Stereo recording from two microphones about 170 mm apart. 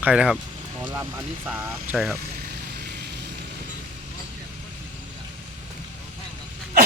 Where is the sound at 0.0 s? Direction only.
5° right (ahead or behind).